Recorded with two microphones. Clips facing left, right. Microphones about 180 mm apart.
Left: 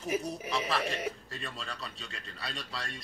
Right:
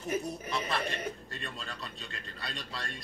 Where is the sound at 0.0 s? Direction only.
Centre (ahead or behind).